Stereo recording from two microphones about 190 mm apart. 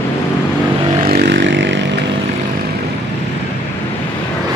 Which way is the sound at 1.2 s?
70° right (ahead or behind).